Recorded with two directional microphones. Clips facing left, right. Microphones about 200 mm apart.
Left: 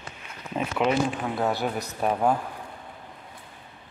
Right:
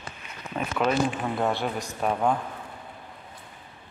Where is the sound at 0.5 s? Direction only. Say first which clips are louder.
Left 1 dB; 15° left (ahead or behind).